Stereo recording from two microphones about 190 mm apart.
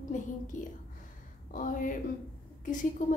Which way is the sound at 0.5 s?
40° left (ahead or behind).